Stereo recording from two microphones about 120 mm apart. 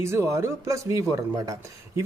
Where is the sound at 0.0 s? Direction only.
25° right (ahead or behind).